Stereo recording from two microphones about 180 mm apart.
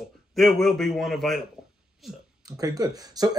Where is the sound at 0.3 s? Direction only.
Centre (ahead or behind).